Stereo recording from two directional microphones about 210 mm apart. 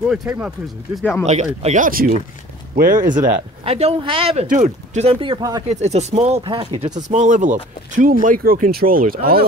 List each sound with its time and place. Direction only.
0.1 s speech: 5° right (ahead or behind)
1.2 s speech: 35° right (ahead or behind)
3.2 s speech: 30° right (ahead or behind)
5.7 s speech: 30° right (ahead or behind)